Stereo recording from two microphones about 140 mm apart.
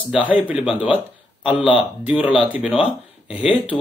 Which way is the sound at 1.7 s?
5° right (ahead or behind).